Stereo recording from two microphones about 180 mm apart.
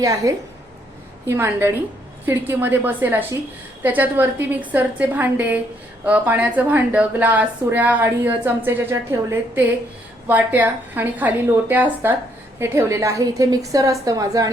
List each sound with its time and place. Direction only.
0.0 s a woman's voice: 20° right (ahead or behind)